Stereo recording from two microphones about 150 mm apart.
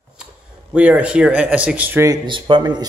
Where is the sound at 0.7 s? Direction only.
10° right (ahead or behind).